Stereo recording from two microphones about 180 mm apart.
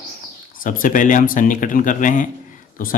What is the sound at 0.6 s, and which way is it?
Speech, 50° left (ahead or behind).